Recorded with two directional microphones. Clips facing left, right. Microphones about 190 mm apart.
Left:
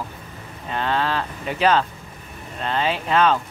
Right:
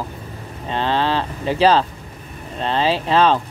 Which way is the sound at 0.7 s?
30° right (ahead or behind).